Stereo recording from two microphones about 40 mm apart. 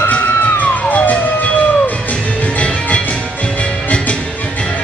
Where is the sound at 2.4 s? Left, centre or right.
Left.